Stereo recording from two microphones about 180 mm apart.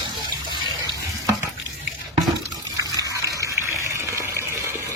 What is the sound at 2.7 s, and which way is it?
Water, 20° right (ahead or behind).